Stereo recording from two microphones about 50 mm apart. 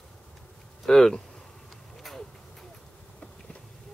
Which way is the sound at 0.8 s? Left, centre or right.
Centre.